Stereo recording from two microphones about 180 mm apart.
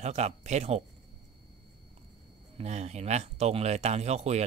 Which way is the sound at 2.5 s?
35° right (ahead or behind).